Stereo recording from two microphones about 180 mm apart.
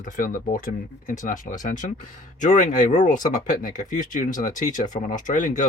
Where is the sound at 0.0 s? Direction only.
50° left (ahead or behind).